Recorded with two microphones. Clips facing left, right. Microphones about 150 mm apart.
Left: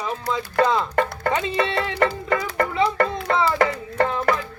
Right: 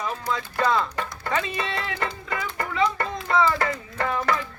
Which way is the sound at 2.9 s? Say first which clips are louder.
Left 7 dB; 90° left.